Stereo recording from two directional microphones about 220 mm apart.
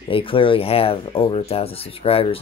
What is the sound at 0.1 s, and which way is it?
Speech, 25° left (ahead or behind).